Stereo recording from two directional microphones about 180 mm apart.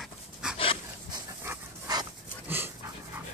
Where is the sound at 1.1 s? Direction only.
20° right (ahead or behind).